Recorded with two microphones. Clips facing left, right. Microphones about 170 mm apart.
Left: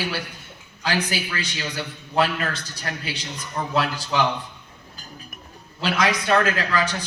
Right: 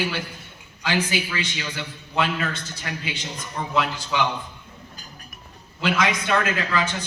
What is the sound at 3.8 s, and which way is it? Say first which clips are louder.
Speech: even; 40° left (ahead or behind).